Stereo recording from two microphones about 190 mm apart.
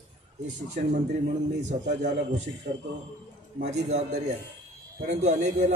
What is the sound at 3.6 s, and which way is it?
A man's voice, 35° right (ahead or behind).